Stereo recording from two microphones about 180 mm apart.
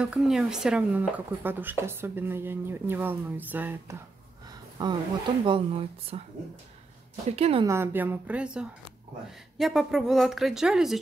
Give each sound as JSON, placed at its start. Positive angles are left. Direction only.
{"t": 0.0, "sound": "speech", "side_deg": -5}
{"t": 4.8, "sound": "speech", "side_deg": -25}
{"t": 7.2, "sound": "speech", "side_deg": -35}
{"t": 7.6, "sound": "speech", "side_deg": -15}